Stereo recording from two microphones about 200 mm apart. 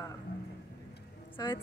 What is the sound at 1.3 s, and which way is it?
Speech, 25° left (ahead or behind).